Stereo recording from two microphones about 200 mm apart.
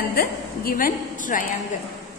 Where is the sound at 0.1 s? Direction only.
45° left (ahead or behind).